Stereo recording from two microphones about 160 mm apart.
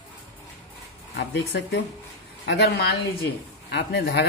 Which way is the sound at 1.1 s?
90° left.